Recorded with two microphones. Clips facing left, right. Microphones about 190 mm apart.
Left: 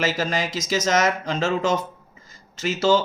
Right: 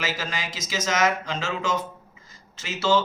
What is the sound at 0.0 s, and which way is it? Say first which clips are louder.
Speech: left 7 dB; 40° left (ahead or behind).